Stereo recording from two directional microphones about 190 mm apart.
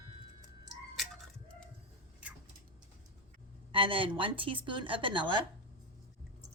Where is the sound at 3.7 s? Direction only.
25° right (ahead or behind).